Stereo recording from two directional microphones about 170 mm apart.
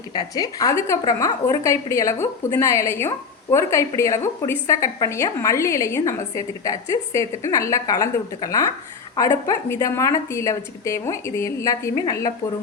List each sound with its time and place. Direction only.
0.1 s a woman's voice: 25° left (ahead or behind)